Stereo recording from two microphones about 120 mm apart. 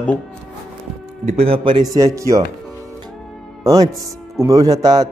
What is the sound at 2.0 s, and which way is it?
Speech, 25° right (ahead or behind).